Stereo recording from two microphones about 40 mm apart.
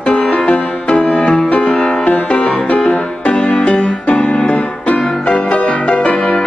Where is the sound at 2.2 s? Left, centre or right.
Left.